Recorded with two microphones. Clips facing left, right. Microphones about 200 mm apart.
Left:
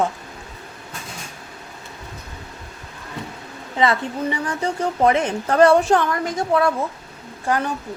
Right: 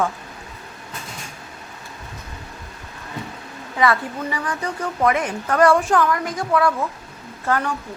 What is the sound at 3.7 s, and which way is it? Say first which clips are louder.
Speech: even; 25° left (ahead or behind).